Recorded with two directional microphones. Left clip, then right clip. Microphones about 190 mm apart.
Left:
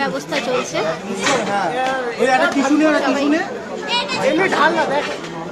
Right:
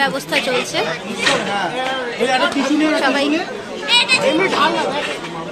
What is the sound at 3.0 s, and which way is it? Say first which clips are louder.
Speech: right 2 dB; 5° right (ahead or behind).